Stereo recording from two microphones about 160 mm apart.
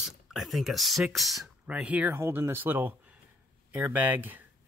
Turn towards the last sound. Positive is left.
turn(degrees=-10)  # may be behind; listen again after turning